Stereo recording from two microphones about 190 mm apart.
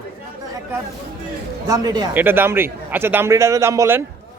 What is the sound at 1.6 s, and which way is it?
Speech, 20° right (ahead or behind).